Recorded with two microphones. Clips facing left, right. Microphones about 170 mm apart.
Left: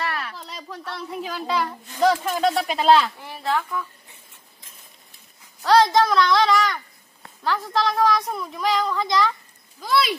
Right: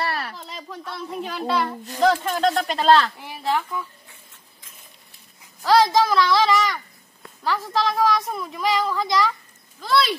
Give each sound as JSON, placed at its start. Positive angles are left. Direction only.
{"t": 0.0, "sound": "a sound", "side_deg": -35}
{"t": 0.4, "sound": "a woman's voice", "side_deg": 0}
{"t": 3.3, "sound": "a woman's voice", "side_deg": -15}
{"t": 5.6, "sound": "a woman's voice", "side_deg": 0}